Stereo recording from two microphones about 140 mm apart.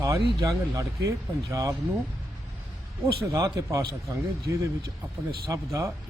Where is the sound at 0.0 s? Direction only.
25° right (ahead or behind).